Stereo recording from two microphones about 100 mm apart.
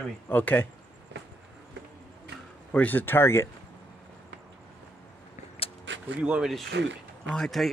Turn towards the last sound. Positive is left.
turn(degrees=5)  # may be behind; listen again after turning